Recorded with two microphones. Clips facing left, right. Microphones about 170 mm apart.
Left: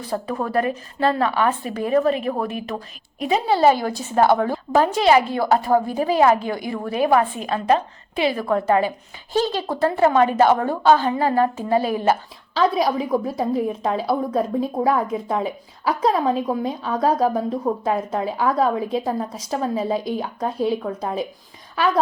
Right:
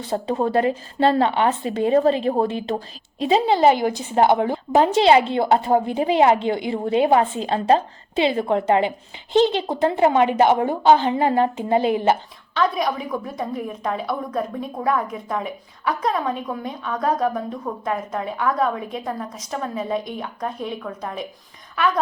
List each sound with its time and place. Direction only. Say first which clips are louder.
0.0 s speech: right 3 dB; 25° right (ahead or behind)
12.5 s a woman's voice: left 3 dB; 30° left (ahead or behind)